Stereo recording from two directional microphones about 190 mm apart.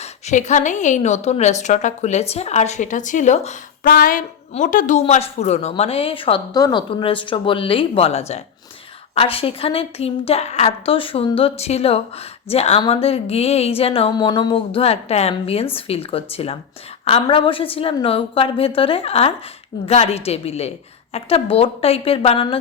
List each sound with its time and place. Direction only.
0.0 s a woman's voice: 40° left (ahead or behind)